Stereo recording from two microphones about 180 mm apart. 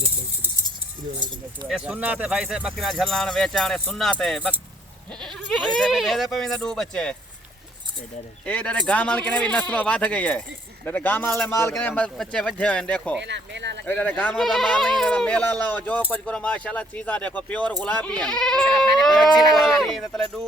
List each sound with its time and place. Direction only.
1.6 s speech: 5° right (ahead or behind)
8.4 s speech: 10° left (ahead or behind)
13.2 s speech: 75° right (ahead or behind)
13.8 s speech: 10° left (ahead or behind)